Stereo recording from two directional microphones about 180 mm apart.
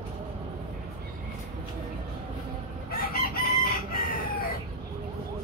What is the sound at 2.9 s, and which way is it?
Chicken, 55° left (ahead or behind).